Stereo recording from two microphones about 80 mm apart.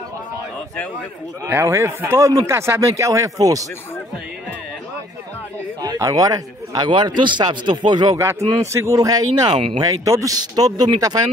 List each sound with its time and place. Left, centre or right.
1.5 s a man's voice: right
5.8 s speech: right
7.2 s speech: right
8.7 s speech: right
9.8 s speech: right
10.5 s speech: right